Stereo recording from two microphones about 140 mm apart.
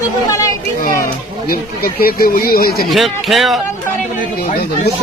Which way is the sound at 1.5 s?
90° left.